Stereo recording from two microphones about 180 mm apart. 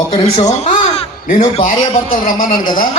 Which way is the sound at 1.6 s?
50° left (ahead or behind).